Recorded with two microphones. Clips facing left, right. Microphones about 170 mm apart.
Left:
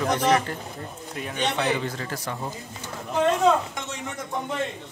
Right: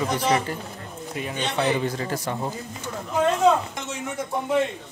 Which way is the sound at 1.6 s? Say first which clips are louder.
Right 3 dB; 15° right (ahead or behind).